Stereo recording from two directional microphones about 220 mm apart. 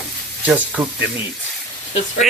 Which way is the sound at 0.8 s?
10° right (ahead or behind).